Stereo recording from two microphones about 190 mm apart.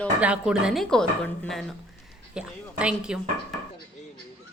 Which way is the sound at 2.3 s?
5° right (ahead or behind).